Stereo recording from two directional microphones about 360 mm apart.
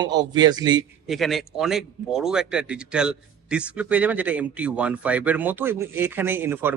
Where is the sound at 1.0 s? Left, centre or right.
Centre.